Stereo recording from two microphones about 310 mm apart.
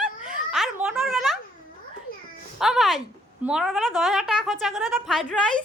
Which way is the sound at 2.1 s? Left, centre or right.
Left.